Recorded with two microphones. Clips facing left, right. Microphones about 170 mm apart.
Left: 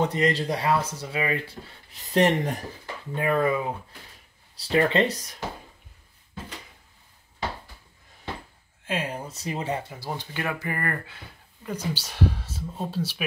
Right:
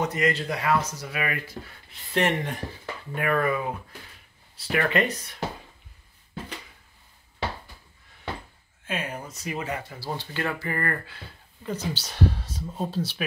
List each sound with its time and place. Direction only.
0.0 s speech: 30° left (ahead or behind)
1.9 s speech: 40° left (ahead or behind)
3.2 s speech: 20° left (ahead or behind)
8.8 s speech: 30° left (ahead or behind)
9.8 s speech: 20° left (ahead or behind)